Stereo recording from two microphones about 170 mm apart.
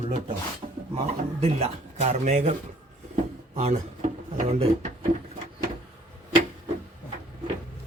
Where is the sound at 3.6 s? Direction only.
40° right (ahead or behind).